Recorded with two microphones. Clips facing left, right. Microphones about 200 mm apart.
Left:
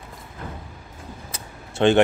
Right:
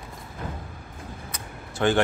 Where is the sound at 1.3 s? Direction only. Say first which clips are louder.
Even; 25° left (ahead or behind).